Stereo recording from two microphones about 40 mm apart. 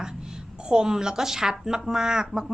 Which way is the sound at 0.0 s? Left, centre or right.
Right.